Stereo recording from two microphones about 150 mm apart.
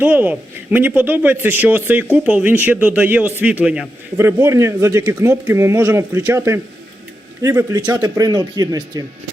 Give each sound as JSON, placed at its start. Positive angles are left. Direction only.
{"t": 0.0, "sound": "speech", "side_deg": -10}